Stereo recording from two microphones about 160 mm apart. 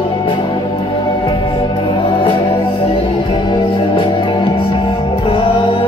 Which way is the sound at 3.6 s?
30° left (ahead or behind).